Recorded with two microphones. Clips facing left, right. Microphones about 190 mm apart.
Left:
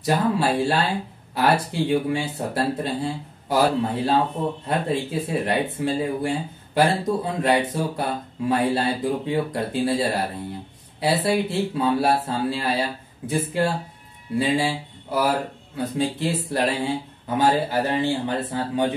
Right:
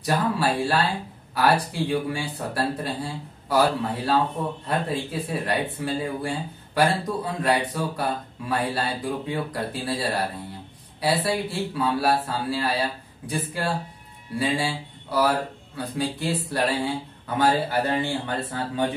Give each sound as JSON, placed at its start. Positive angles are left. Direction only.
{"t": 0.0, "sound": "speech", "side_deg": 25}